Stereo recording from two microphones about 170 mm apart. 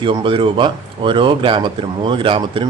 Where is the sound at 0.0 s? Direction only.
30° right (ahead or behind).